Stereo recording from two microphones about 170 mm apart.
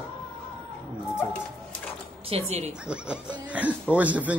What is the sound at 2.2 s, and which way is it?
Speech, 35° right (ahead or behind).